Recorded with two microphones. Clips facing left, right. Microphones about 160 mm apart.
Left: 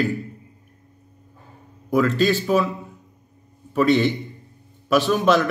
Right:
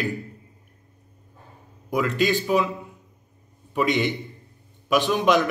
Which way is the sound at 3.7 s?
15° right (ahead or behind).